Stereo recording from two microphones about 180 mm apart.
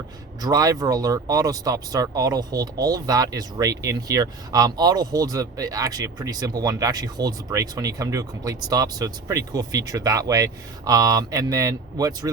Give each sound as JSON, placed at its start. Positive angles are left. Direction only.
{"t": 0.4, "sound": "speech", "side_deg": -20}